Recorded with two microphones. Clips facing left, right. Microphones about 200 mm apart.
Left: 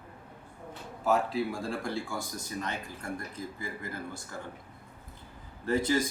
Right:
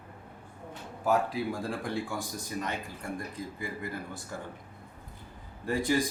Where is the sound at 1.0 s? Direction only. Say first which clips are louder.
Even; 15° right (ahead or behind).